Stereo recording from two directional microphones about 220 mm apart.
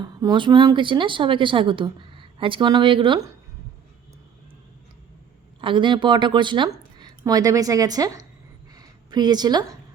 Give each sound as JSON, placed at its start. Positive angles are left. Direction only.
{"t": 0.0, "sound": "a woman's voice", "side_deg": -20}
{"t": 5.5, "sound": "speech", "side_deg": -20}
{"t": 8.7, "sound": "a sound", "side_deg": -20}